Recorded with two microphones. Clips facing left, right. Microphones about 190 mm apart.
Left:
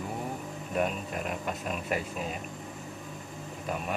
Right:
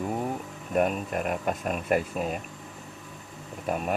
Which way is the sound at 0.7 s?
50° right (ahead or behind).